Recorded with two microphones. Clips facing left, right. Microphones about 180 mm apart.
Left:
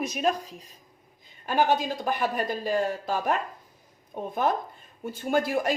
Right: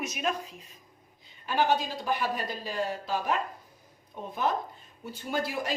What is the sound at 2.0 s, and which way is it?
Speech, 50° left (ahead or behind).